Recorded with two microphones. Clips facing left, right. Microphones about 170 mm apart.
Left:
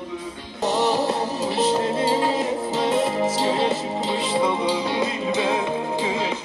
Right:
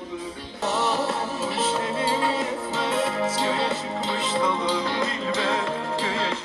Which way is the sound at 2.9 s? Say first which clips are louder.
Left 2 dB; 15° left (ahead or behind).